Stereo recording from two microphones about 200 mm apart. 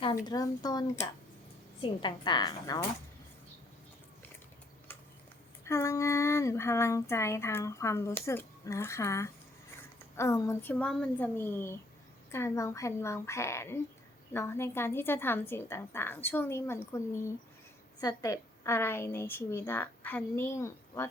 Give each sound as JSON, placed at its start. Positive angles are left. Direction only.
{"t": 0.3, "sound": "a woman's voice", "side_deg": 20}
{"t": 5.6, "sound": "speech", "side_deg": 15}